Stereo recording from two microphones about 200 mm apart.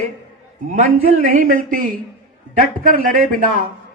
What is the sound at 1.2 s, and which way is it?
A man's voice, 40° right (ahead or behind).